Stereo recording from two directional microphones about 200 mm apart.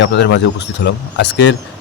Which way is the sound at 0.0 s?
60° left (ahead or behind).